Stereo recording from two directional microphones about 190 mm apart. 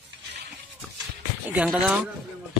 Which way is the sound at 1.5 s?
5° right (ahead or behind).